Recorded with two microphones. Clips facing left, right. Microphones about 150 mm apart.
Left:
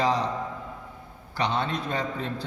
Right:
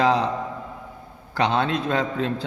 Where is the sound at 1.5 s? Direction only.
90° right.